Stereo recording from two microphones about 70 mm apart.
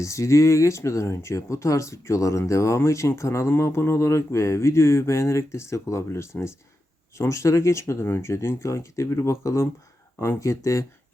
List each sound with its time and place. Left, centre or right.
0.0 s speech: left